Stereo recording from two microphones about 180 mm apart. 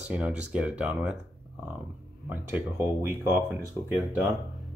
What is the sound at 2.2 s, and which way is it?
Speech, 10° right (ahead or behind).